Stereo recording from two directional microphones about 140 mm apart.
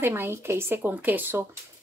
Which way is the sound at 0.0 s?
15° right (ahead or behind).